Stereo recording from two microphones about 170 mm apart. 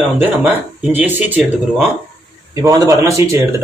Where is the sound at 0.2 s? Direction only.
10° right (ahead or behind).